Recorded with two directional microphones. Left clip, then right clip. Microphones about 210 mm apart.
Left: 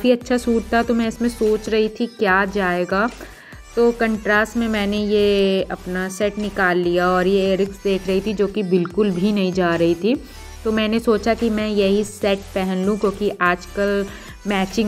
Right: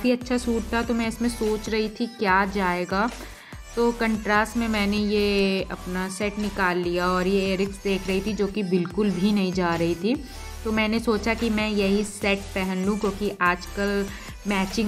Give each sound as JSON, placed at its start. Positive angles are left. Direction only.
{"t": 0.0, "sound": "speech", "side_deg": 15}